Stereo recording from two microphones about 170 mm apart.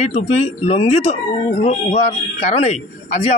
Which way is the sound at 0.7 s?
40° left (ahead or behind).